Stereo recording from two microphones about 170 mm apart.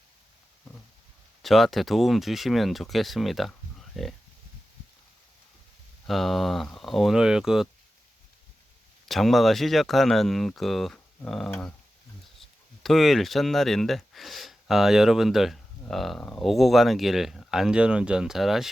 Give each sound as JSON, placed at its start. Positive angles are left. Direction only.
{"t": 1.4, "sound": "speech", "side_deg": 0}
{"t": 6.1, "sound": "speech", "side_deg": 0}
{"t": 9.0, "sound": "speech", "side_deg": 0}